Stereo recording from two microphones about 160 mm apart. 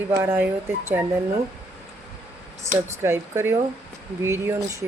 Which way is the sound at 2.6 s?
15° right (ahead or behind).